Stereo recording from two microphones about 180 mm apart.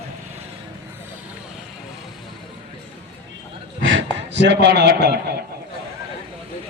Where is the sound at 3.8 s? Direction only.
90° right.